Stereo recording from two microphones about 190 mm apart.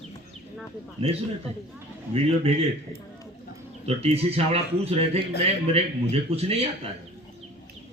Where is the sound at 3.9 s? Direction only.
30° right (ahead or behind).